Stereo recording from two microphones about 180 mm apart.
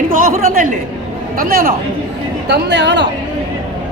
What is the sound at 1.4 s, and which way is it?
Speech, 55° right (ahead or behind).